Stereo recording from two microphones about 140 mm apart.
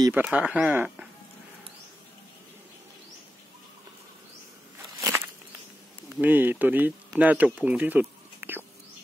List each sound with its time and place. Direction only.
0.1 s speech: 10° right (ahead or behind)
5.0 s walk: 15° right (ahead or behind)
6.1 s speech: 15° right (ahead or behind)